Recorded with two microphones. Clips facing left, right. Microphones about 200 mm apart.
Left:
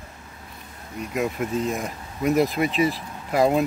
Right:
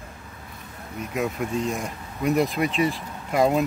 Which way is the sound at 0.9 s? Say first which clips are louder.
Left 1 dB; centre (ahead or behind).